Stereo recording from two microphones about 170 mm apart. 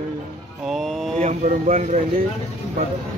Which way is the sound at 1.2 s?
45° right (ahead or behind).